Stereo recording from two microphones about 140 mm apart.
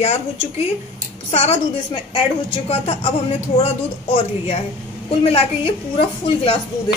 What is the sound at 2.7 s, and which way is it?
Speech, 45° left (ahead or behind).